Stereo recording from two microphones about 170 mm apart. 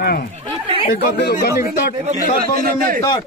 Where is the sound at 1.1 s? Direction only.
75° left (ahead or behind).